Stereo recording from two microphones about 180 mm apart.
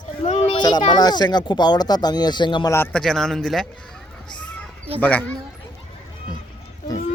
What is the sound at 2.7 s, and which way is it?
Speech, 10° left (ahead or behind).